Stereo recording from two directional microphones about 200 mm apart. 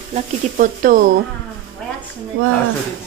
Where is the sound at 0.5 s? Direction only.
45° right (ahead or behind).